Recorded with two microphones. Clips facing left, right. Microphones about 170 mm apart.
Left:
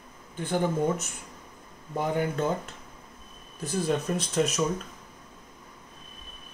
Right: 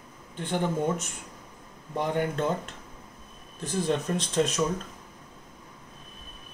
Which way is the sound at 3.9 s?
5° left (ahead or behind).